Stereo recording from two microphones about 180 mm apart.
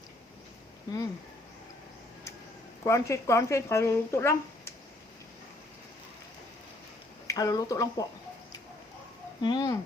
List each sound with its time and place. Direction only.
2.8 s speech: 15° left (ahead or behind)
7.3 s speech: 20° left (ahead or behind)
9.4 s speech: 25° left (ahead or behind)